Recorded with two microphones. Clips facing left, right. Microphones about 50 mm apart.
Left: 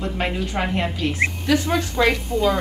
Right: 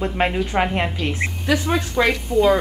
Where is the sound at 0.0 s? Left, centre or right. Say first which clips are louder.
Right 4 dB; right.